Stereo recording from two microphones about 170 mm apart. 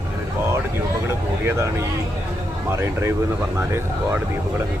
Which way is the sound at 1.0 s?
15° right (ahead or behind).